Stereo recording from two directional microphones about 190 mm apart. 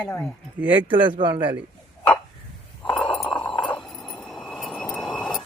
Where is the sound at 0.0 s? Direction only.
5° left (ahead or behind).